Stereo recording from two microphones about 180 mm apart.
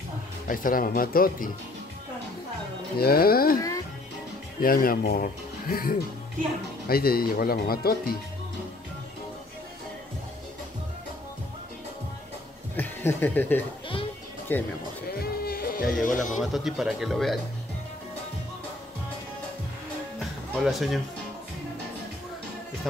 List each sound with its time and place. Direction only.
0.5 s speech: 50° left (ahead or behind)
3.0 s speech: 55° left (ahead or behind)
4.6 s speech: 55° left (ahead or behind)
12.7 s speech: 10° left (ahead or behind)
15.0 s music: 60° left (ahead or behind)
16.3 s speech: centre (ahead or behind)
20.2 s music: centre (ahead or behind)